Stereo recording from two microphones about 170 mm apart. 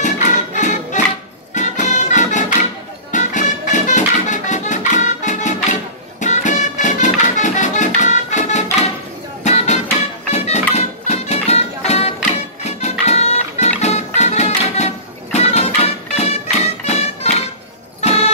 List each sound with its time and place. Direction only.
0.0 s music: 45° left (ahead or behind)